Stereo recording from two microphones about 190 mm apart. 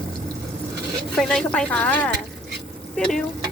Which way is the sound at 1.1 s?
Centre (ahead or behind).